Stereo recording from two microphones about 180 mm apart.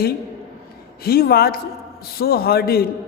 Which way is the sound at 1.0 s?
60° left (ahead or behind).